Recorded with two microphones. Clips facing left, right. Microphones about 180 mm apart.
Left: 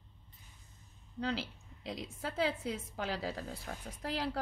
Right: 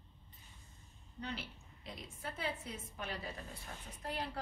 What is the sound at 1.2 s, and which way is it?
A woman's voice, 90° left.